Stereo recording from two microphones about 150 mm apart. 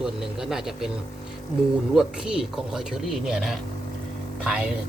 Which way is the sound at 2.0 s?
5° right (ahead or behind).